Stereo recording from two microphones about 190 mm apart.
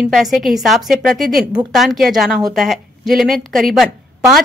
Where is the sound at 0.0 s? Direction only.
Centre (ahead or behind).